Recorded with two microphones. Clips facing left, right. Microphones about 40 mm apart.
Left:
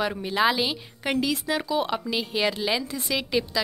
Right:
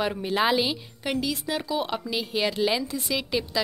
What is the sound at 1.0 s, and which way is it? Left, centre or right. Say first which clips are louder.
Speech: left 2 dB; centre.